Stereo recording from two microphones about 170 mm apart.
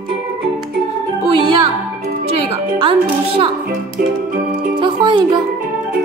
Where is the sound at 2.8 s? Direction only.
30° right (ahead or behind).